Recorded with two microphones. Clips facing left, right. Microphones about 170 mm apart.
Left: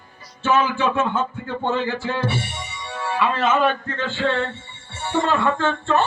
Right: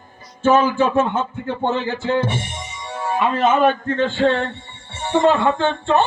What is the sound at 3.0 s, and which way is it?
Music, 45° right (ahead or behind).